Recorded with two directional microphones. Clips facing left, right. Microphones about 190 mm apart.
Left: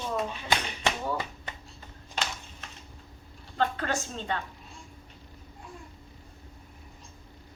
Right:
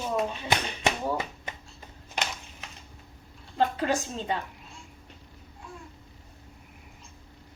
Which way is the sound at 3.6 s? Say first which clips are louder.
Right 3 dB; 10° right (ahead or behind).